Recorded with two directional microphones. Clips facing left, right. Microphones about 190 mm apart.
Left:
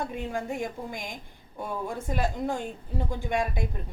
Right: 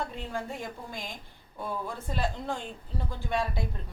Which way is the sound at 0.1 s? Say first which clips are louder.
Left 4 dB; 15° left (ahead or behind).